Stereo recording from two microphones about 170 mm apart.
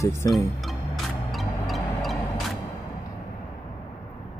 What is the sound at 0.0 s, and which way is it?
Speech, 15° left (ahead or behind).